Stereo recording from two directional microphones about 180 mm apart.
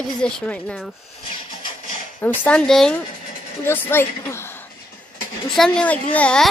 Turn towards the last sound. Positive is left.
turn(degrees=5)  # may be behind; listen again after turning